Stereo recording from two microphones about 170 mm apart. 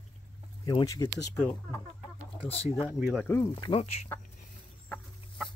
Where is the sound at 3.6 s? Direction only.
35° left (ahead or behind).